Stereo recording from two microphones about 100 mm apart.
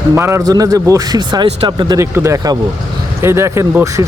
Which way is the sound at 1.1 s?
45° right (ahead or behind).